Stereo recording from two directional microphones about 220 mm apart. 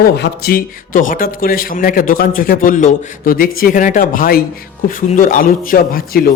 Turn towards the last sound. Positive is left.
turn(degrees=40)  # may be behind; listen again after turning